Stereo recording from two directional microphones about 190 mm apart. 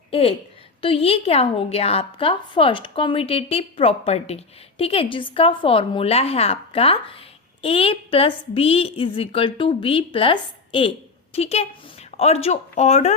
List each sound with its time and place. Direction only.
0.1 s a woman's voice: 30° left (ahead or behind)